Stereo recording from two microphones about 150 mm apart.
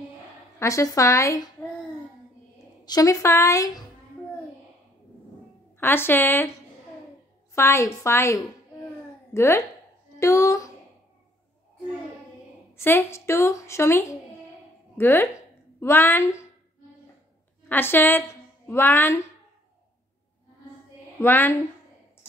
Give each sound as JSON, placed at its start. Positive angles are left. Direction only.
{"t": 0.6, "sound": "a woman's voice", "side_deg": 20}
{"t": 2.8, "sound": "a woman's voice", "side_deg": 25}
{"t": 5.8, "sound": "a woman's voice", "side_deg": 15}
{"t": 7.5, "sound": "a woman's voice", "side_deg": 15}
{"t": 12.7, "sound": "a woman's voice", "side_deg": 15}
{"t": 17.6, "sound": "a woman's voice", "side_deg": 15}
{"t": 21.2, "sound": "a woman's voice", "side_deg": 15}